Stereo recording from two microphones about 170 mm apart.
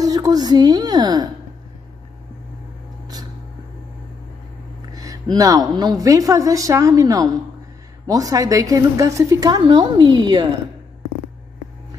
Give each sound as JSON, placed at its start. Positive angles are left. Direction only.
{"t": 0.0, "sound": "a woman's voice", "side_deg": -20}
{"t": 4.9, "sound": "a woman's voice", "side_deg": -20}